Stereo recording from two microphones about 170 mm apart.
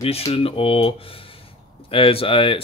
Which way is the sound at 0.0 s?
35° left (ahead or behind).